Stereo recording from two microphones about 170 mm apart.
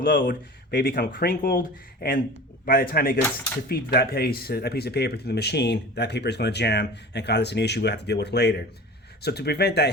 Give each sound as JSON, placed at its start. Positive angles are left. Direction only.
{"t": 0.0, "sound": "speech", "side_deg": 60}